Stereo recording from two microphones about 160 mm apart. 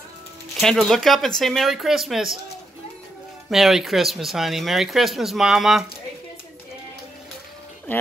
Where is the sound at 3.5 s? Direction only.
Centre (ahead or behind).